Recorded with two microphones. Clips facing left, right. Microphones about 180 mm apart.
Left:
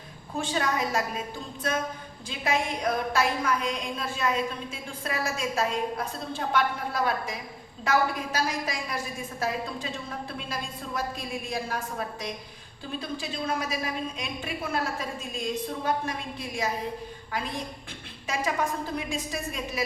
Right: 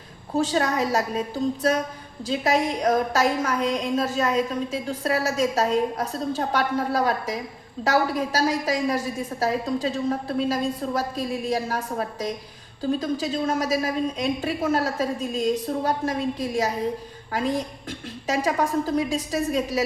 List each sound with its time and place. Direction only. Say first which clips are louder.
0.3 s a woman's voice: right 6 dB; 40° right (ahead or behind)